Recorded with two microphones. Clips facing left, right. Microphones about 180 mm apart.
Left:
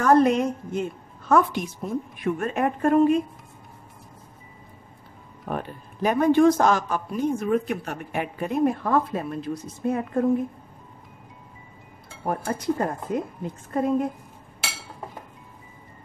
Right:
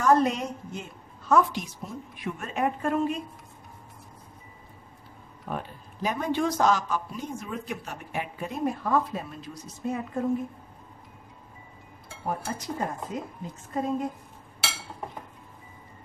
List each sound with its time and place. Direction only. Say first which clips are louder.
0.0 s a man's voice: left 4 dB; 55° left (ahead or behind)
5.5 s a man's voice: left 4 dB; 55° left (ahead or behind)
12.3 s a man's voice: left 6 dB; 60° left (ahead or behind)